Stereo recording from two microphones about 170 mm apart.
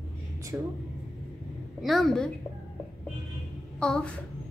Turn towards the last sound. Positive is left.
turn(degrees=5)  # may be behind; listen again after turning